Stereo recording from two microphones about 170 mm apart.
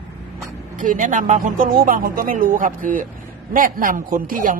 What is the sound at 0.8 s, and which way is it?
A man's voice, 50° right (ahead or behind).